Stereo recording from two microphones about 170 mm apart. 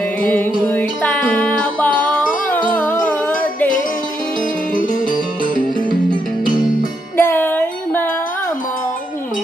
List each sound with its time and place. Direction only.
0.3 s music: 10° left (ahead or behind)
7.2 s music: 10° left (ahead or behind)